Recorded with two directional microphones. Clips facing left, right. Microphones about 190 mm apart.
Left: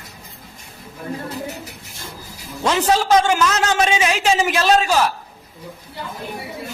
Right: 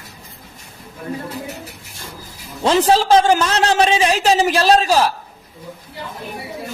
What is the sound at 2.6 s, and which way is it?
A man's voice, 35° right (ahead or behind).